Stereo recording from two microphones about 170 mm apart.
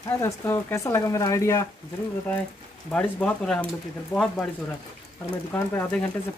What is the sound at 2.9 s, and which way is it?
Speech, 5° left (ahead or behind).